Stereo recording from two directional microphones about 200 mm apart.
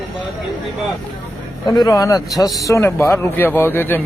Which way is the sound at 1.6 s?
20° left (ahead or behind).